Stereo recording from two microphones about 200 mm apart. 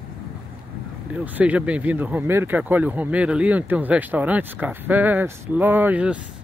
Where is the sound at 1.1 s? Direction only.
5° right (ahead or behind).